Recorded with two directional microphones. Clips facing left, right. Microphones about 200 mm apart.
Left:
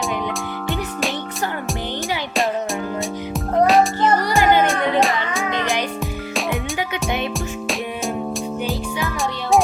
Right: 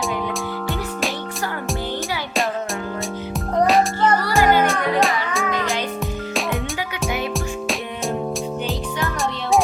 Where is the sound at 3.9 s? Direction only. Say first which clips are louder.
Left 1 dB; 15° left (ahead or behind); by 6.8 s centre (ahead or behind).